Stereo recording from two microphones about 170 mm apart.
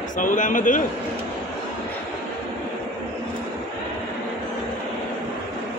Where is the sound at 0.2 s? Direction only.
50° left (ahead or behind).